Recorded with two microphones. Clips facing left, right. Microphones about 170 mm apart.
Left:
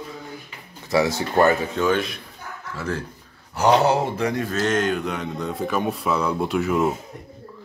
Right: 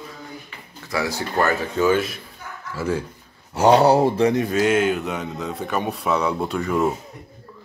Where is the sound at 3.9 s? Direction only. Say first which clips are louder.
Right 5 dB; 35° right (ahead or behind).